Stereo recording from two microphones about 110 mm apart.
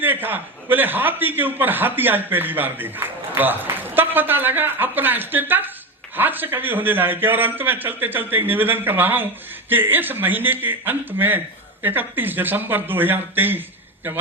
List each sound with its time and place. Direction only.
0.0 s a man's voice: 20° right (ahead or behind)